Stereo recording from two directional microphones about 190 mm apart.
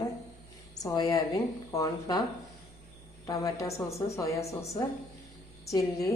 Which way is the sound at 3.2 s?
15° left (ahead or behind).